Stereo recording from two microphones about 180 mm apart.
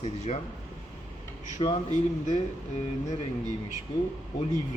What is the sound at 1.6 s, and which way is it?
Speech, 25° left (ahead or behind).